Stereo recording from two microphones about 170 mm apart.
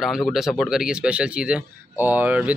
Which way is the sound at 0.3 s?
Centre (ahead or behind).